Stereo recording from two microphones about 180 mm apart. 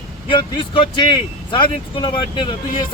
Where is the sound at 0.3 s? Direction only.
30° left (ahead or behind).